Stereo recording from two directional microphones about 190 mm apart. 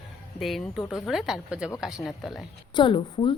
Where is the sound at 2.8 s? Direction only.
25° left (ahead or behind).